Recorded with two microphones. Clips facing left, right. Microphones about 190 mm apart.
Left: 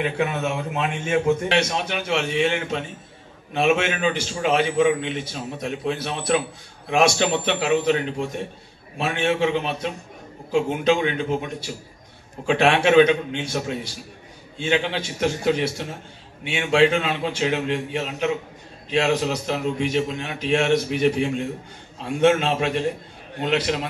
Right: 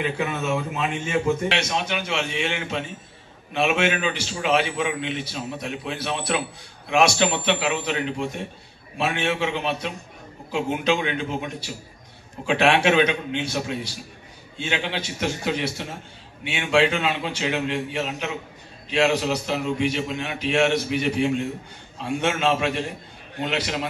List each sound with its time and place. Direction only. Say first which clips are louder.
0.0 s a man's voice: left 2 dB; 60° left (ahead or behind)
2.0 s a man's voice: left 5 dB; 50° left (ahead or behind)
23.4 s a man's voice: left 3 dB; 45° left (ahead or behind)